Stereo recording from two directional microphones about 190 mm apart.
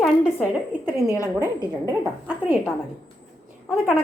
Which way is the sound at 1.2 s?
20° right (ahead or behind).